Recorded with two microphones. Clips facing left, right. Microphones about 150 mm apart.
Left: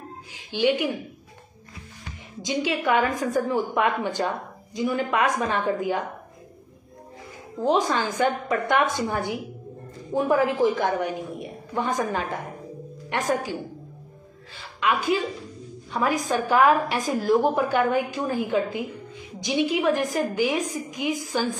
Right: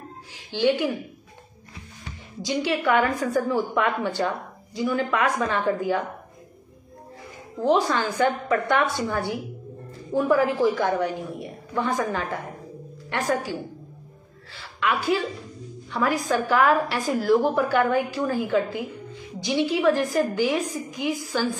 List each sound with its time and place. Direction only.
0.5 s a woman's voice: 15° left (ahead or behind)
2.4 s a woman's voice: 15° left (ahead or behind)
7.6 s a woman's voice: 15° left (ahead or behind)
14.8 s a woman's voice: 15° left (ahead or behind)